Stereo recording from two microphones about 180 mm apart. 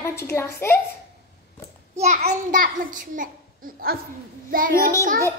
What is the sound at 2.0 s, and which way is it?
A child's voice, 40° right (ahead or behind).